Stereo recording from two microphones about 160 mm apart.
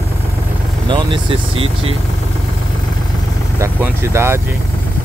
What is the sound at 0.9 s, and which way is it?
Speech, 30° right (ahead or behind).